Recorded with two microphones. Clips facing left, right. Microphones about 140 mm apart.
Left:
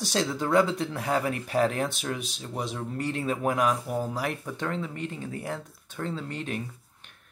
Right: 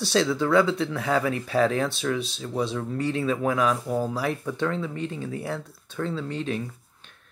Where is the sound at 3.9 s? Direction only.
15° left (ahead or behind).